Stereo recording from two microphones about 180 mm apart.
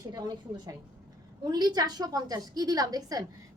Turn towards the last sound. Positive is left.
turn(degrees=-20)  # may be behind; listen again after turning